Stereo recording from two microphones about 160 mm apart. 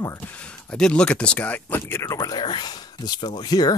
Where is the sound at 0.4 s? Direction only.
5° left (ahead or behind).